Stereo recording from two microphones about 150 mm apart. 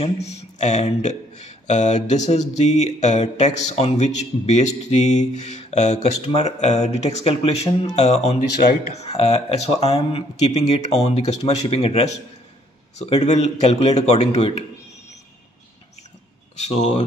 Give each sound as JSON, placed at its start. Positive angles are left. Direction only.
{"t": 0.0, "sound": "speech", "side_deg": 45}
{"t": 16.5, "sound": "speech", "side_deg": 50}